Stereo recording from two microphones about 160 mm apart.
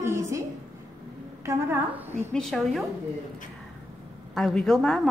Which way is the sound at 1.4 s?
15° right (ahead or behind).